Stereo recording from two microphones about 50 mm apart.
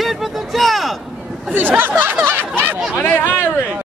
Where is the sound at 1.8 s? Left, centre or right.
Right.